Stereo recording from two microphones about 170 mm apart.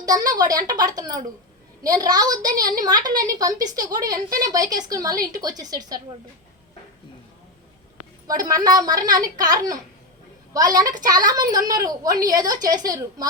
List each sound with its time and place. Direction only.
0.0 s a woman's voice: 20° right (ahead or behind)
8.3 s a woman's voice: 20° right (ahead or behind)